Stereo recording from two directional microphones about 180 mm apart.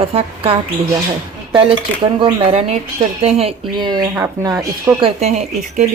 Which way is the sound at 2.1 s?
30° right (ahead or behind).